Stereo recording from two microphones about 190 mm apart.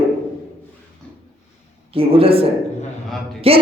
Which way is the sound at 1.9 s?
30° right (ahead or behind).